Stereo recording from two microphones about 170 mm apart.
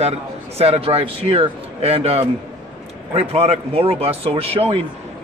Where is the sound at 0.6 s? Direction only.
35° right (ahead or behind).